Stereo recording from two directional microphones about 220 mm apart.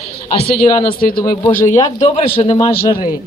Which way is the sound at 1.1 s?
15° left (ahead or behind).